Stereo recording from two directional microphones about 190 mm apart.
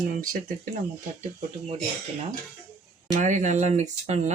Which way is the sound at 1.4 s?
35° right (ahead or behind).